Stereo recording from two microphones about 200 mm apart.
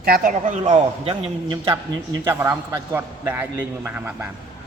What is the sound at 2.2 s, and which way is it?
A man's voice, 10° right (ahead or behind).